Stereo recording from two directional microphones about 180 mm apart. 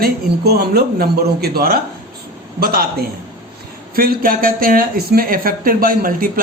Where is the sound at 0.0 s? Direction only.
60° right (ahead or behind).